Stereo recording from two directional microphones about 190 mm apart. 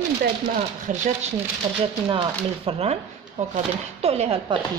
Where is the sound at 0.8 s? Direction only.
40° right (ahead or behind).